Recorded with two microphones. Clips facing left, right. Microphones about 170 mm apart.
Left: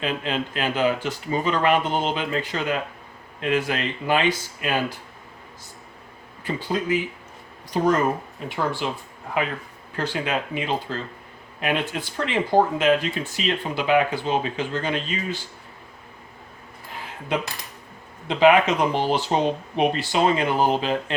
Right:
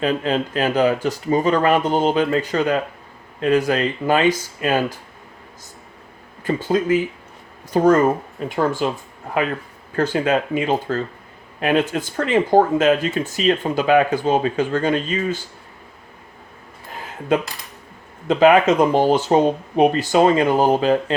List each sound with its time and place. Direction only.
0.0 s speech: 40° right (ahead or behind)
6.4 s speech: 45° right (ahead or behind)
9.9 s speech: 45° right (ahead or behind)
18.3 s speech: 45° right (ahead or behind)